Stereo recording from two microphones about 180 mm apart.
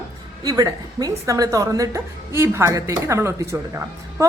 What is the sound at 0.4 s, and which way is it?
A woman's voice, 20° right (ahead or behind).